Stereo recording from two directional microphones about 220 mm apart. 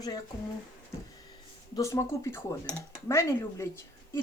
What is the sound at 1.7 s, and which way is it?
Speech, 15° left (ahead or behind).